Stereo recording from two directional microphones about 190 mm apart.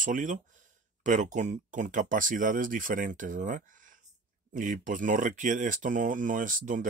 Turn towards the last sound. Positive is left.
turn(degrees=-45)  # may be behind; listen again after turning